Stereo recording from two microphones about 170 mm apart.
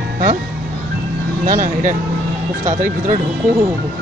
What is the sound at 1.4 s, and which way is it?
Speech, 50° right (ahead or behind).